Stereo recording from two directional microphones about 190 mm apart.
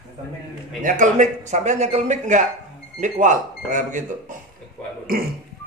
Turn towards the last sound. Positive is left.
turn(degrees=-50)  # may be behind; listen again after turning